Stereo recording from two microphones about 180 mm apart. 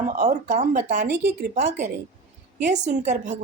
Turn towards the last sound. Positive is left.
turn(degrees=-40)  # may be behind; listen again after turning